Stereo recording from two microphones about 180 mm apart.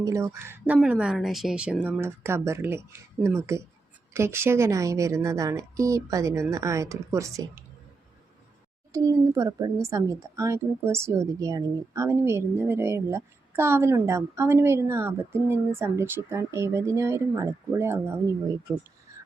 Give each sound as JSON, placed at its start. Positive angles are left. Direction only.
{"t": 0.0, "sound": "a woman's voice", "side_deg": -15}
{"t": 8.9, "sound": "a woman's voice", "side_deg": -20}
{"t": 19.1, "sound": "a sound", "side_deg": -15}